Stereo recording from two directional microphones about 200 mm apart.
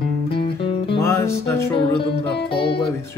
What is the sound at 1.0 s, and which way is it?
Speech, 15° left (ahead or behind).